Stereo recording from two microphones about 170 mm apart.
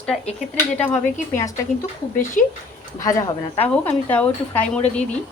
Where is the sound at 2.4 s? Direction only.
50° left (ahead or behind).